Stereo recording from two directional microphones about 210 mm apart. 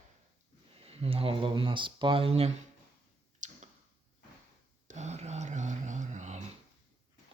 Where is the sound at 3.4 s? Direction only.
35° right (ahead or behind).